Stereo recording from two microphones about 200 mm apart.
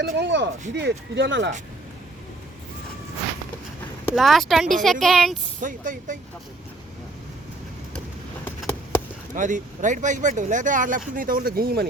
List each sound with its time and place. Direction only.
0.0 s speech: 60° right (ahead or behind)
4.1 s speech: centre (ahead or behind)
5.5 s speech: 40° right (ahead or behind)
9.3 s speech: 40° right (ahead or behind)